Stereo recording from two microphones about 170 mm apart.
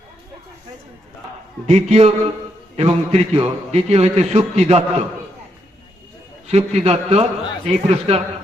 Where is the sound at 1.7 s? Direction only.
40° right (ahead or behind).